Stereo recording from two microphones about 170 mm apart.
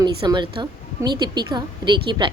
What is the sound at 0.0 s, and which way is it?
A woman's voice, 25° right (ahead or behind).